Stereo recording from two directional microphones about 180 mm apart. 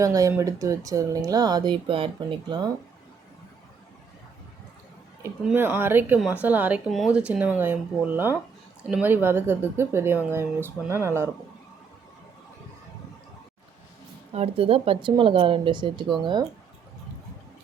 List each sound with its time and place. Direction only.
0.0 s speech: 20° right (ahead or behind)
5.5 s speech: 10° right (ahead or behind)
14.3 s speech: 35° right (ahead or behind)